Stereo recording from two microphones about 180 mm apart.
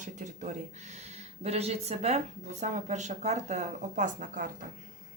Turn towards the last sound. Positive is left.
turn(degrees=-45)  # may be behind; listen again after turning